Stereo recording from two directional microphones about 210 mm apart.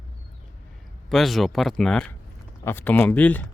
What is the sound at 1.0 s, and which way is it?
Speech, centre (ahead or behind).